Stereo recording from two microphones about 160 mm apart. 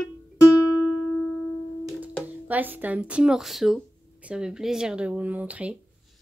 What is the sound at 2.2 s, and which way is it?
Speech, 10° right (ahead or behind).